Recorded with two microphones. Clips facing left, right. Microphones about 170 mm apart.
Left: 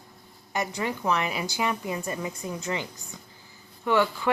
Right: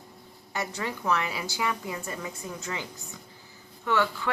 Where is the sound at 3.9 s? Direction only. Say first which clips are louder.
Left 3 dB; 15° left (ahead or behind).